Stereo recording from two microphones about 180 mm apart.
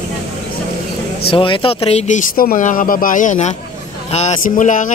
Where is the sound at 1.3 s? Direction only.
30° left (ahead or behind); by 4.9 s 45° left (ahead or behind).